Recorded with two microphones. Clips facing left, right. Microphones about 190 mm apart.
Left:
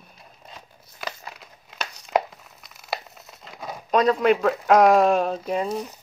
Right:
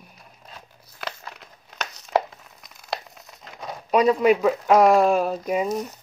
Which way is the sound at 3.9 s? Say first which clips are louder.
Right 1 dB; 10° right (ahead or behind).